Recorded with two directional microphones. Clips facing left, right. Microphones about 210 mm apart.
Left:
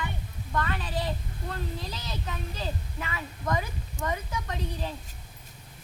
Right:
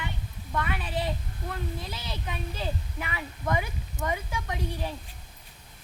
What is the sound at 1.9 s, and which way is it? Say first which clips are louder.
A woman's voice: even; 10° right (ahead or behind).